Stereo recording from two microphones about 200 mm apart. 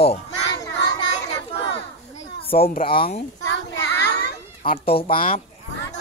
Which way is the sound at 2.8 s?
25° left (ahead or behind).